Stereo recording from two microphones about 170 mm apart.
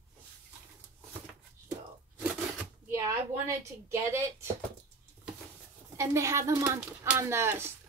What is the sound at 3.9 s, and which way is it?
Speech, 15° right (ahead or behind).